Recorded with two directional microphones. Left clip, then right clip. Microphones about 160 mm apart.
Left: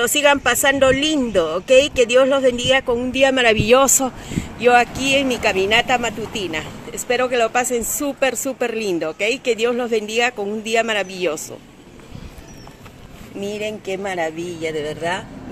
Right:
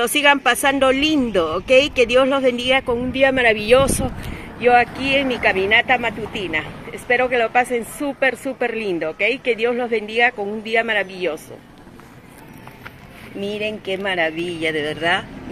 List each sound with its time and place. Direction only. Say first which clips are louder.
0.0 s speech: even; centre (ahead or behind)
3.1 s speech: even; 20° left (ahead or behind)
3.5 s speech: left 1 dB; 70° left (ahead or behind)
4.6 s speech: even; 35° left (ahead or behind)
13.4 s speech: right 1 dB; 5° right (ahead or behind)